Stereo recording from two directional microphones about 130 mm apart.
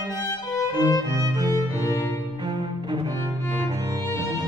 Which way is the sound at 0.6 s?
30° left (ahead or behind).